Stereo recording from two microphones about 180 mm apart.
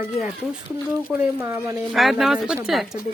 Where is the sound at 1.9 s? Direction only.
Centre (ahead or behind).